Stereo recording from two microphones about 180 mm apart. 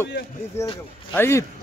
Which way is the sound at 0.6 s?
30° left (ahead or behind).